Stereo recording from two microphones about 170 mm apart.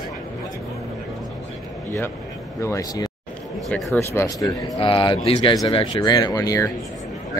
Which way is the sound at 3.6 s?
10° left (ahead or behind).